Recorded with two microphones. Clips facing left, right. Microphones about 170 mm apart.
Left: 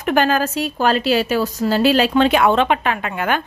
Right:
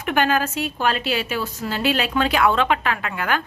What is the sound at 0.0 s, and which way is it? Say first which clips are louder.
A woman's voice: left 4 dB; 35° left (ahead or behind).